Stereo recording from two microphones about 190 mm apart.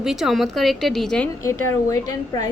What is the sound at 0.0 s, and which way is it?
A woman's voice, centre (ahead or behind).